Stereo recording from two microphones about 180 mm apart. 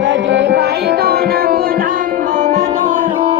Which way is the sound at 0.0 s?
90° right.